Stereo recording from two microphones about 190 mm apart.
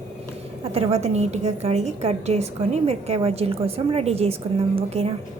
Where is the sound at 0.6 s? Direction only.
30° right (ahead or behind).